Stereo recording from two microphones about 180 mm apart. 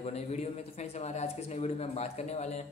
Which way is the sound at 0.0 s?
35° left (ahead or behind).